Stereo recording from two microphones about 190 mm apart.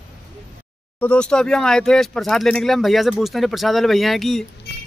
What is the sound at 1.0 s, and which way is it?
Speech, 5° left (ahead or behind).